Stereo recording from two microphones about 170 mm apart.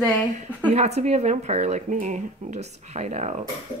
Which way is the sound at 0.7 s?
40° right (ahead or behind).